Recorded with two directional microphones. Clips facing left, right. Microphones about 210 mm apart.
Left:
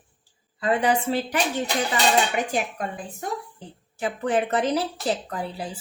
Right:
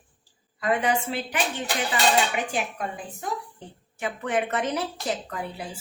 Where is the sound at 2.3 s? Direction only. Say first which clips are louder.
Left 3 dB; 40° left (ahead or behind).